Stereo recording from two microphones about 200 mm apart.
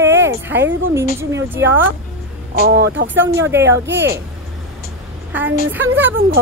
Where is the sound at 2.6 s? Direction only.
65° right (ahead or behind).